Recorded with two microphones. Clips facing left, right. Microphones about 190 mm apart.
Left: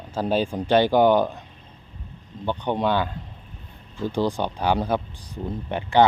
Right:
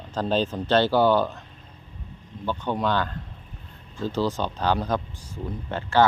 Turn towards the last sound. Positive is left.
turn(degrees=15)  # may be behind; listen again after turning